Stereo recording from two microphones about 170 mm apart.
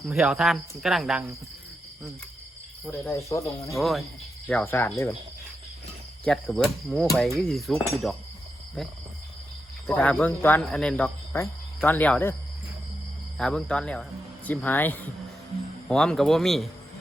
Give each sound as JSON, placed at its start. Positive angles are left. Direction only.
{"t": 0.0, "sound": "speech", "side_deg": 0}
{"t": 2.8, "sound": "speech", "side_deg": 10}
{"t": 3.8, "sound": "speech", "side_deg": 0}
{"t": 6.2, "sound": "speech", "side_deg": 5}
{"t": 9.8, "sound": "speech", "side_deg": 10}
{"t": 13.4, "sound": "speech", "side_deg": 5}